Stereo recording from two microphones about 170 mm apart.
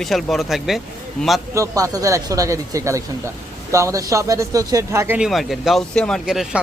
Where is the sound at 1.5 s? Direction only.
20° right (ahead or behind).